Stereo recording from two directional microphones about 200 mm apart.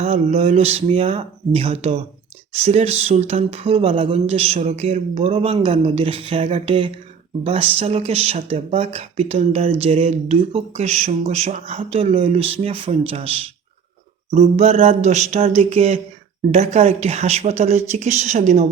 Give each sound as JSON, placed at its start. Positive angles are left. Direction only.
{"t": 0.0, "sound": "speech", "side_deg": -30}